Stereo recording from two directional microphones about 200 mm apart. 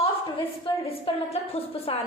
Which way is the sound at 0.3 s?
25° left (ahead or behind).